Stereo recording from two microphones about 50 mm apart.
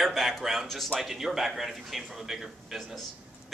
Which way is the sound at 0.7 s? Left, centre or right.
Centre.